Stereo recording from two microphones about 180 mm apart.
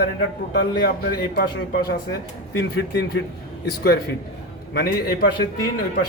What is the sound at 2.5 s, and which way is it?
A man's voice, 70° left (ahead or behind).